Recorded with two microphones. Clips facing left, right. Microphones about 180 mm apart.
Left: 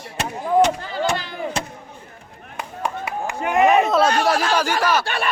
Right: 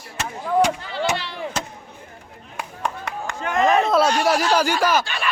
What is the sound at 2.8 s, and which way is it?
Chop, 10° left (ahead or behind).